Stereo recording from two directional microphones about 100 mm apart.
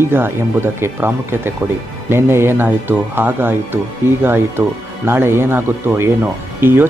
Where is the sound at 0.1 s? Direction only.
20° right (ahead or behind).